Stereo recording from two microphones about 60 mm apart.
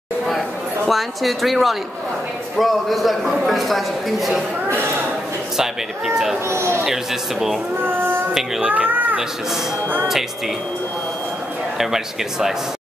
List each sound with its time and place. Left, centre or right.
0.8 s a man's voice: centre
5.6 s speech: centre
6.5 s speech: right
6.8 s a man's voice: centre
7.8 s child singing: right
8.5 s speech: right
11.8 s speech: centre